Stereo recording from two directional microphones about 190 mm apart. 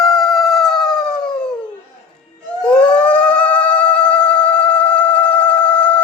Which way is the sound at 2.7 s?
5° left (ahead or behind).